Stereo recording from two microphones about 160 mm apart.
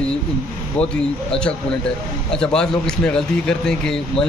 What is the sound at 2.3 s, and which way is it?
A man's voice, 5° left (ahead or behind).